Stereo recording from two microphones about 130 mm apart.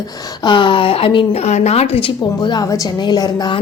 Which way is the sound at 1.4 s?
60° left (ahead or behind).